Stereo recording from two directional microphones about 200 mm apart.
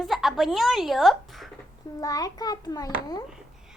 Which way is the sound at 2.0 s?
20° left (ahead or behind).